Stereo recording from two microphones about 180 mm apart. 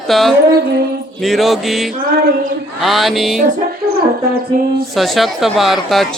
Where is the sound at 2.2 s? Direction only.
60° right (ahead or behind).